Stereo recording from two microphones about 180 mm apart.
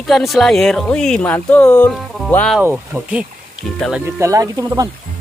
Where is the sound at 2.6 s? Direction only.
10° right (ahead or behind).